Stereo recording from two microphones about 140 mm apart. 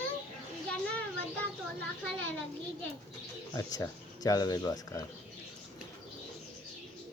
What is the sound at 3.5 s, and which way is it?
Speech, 25° left (ahead or behind).